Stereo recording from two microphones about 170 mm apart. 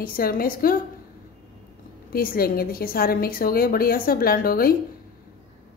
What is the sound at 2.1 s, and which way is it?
A woman's voice, 60° left (ahead or behind).